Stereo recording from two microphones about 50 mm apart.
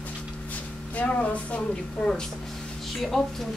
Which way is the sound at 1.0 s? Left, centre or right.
Left.